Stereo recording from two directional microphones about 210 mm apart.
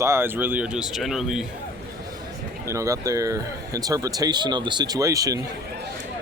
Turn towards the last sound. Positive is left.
turn(degrees=-15)  # may be behind; listen again after turning